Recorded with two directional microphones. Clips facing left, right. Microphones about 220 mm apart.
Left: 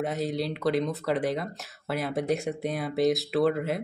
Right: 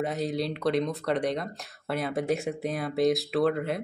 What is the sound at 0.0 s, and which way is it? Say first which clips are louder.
Speech: even; centre (ahead or behind).